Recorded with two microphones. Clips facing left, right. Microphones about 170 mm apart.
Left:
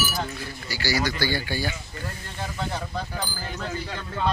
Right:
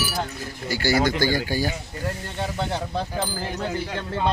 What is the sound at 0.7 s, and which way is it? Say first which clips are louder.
Speech: right 6 dB; 50° right (ahead or behind).